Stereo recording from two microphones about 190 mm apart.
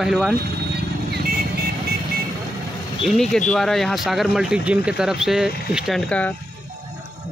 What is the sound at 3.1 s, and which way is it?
Speech, centre (ahead or behind).